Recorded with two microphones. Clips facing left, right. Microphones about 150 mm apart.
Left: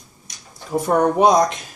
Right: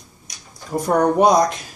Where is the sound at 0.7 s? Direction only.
5° left (ahead or behind).